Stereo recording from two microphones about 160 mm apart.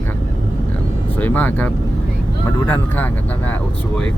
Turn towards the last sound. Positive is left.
turn(degrees=10)  # may be behind; listen again after turning